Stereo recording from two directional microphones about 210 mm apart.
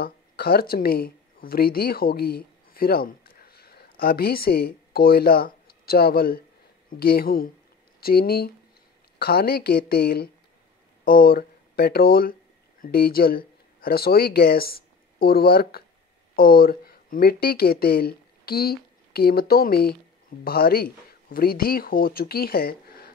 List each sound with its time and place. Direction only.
0.0 s speech: 45° left (ahead or behind)